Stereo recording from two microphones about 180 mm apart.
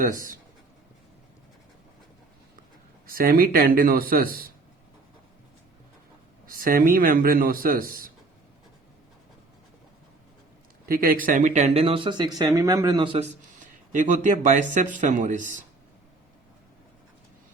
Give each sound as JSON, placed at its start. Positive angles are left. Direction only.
{"t": 0.0, "sound": "speech", "side_deg": -50}
{"t": 3.1, "sound": "speech", "side_deg": -55}
{"t": 6.5, "sound": "speech", "side_deg": -50}
{"t": 10.8, "sound": "speech", "side_deg": -55}
{"t": 13.1, "sound": "speech", "side_deg": -40}